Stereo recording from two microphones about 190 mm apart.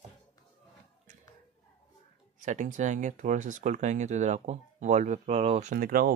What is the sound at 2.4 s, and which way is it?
Speech, 40° right (ahead or behind).